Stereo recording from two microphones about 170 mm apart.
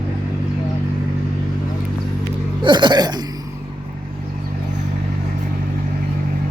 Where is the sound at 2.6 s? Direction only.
25° right (ahead or behind).